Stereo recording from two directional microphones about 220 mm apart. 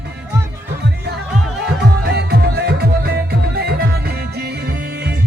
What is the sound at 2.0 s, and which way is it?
Music, 45° right (ahead or behind).